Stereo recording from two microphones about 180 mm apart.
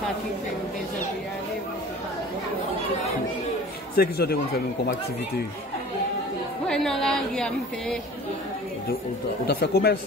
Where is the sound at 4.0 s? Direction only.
60° left (ahead or behind).